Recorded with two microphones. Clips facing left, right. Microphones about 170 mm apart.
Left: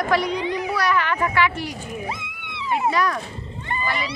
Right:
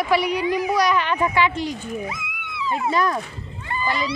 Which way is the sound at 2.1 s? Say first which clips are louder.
Left 1 dB; 30° left (ahead or behind).